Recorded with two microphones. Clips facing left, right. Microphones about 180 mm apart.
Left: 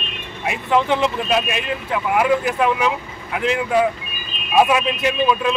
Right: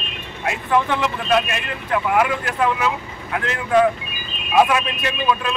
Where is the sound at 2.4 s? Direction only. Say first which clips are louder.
Left 2 dB; 15° left (ahead or behind).